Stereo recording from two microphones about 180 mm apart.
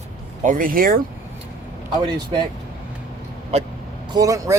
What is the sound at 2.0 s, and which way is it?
Speech, 25° right (ahead or behind).